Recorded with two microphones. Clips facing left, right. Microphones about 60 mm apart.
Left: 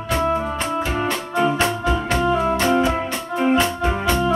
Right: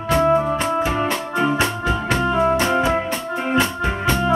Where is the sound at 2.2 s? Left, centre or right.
Right.